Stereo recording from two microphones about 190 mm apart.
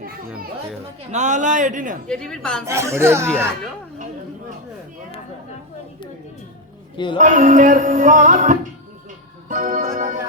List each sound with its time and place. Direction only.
1.1 s a man's voice: 40° right (ahead or behind)
2.0 s a woman's voice: 5° left (ahead or behind)
2.6 s speech: 15° right (ahead or behind)
6.9 s speech: 25° left (ahead or behind)
7.2 s music: 40° right (ahead or behind)
9.5 s organ: 45° right (ahead or behind)